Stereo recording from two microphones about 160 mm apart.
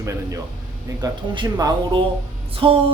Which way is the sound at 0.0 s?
20° right (ahead or behind).